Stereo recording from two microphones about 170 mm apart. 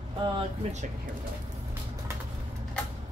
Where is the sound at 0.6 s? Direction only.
40° right (ahead or behind).